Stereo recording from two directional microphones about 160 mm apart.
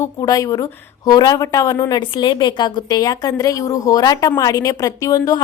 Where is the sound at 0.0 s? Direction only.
20° left (ahead or behind).